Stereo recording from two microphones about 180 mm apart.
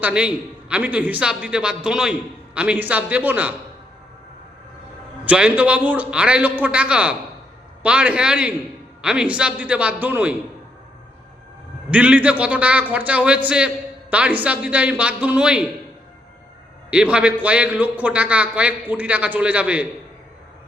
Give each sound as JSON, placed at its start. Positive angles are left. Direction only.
{"t": 0.0, "sound": "a man's voice", "side_deg": -5}
{"t": 5.2, "sound": "a man's voice", "side_deg": -5}
{"t": 11.9, "sound": "a man's voice", "side_deg": -5}
{"t": 16.9, "sound": "a man's voice", "side_deg": -5}